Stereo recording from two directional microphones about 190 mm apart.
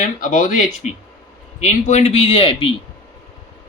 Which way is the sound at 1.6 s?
35° left (ahead or behind).